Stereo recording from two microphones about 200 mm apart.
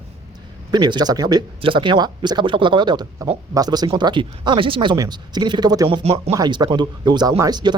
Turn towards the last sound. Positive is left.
turn(degrees=-20)  # may be behind; listen again after turning